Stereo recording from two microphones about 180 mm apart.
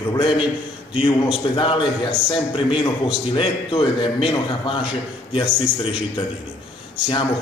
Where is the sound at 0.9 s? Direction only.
30° left (ahead or behind).